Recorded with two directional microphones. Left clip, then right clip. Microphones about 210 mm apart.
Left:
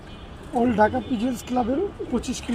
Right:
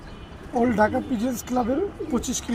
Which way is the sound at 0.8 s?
15° right (ahead or behind).